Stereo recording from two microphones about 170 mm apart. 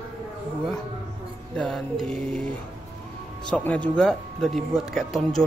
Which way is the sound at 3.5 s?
5° left (ahead or behind).